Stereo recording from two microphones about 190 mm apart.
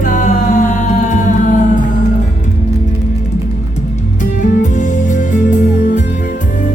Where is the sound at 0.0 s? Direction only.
40° left (ahead or behind).